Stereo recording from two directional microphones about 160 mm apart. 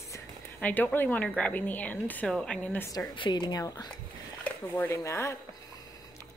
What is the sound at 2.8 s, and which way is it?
Speech, 25° left (ahead or behind).